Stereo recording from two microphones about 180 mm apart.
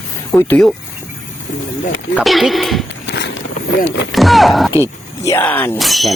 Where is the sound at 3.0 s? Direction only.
75° left (ahead or behind).